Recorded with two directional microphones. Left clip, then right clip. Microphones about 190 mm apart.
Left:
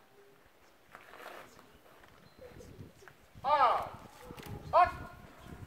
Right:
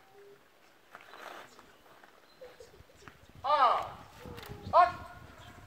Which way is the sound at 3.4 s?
20° left (ahead or behind).